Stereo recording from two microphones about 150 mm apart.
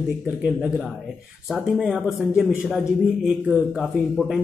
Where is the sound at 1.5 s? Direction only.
5° right (ahead or behind).